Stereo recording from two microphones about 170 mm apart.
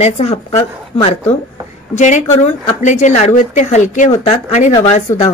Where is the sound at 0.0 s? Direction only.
40° left (ahead or behind).